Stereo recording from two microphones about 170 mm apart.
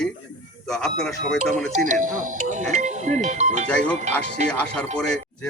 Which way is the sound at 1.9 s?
50° right (ahead or behind).